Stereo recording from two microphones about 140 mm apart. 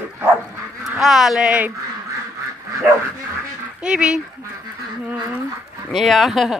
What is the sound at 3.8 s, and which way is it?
Speech, 5° right (ahead or behind).